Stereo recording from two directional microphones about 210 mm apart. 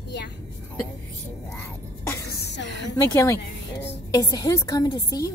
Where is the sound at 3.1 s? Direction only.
15° left (ahead or behind).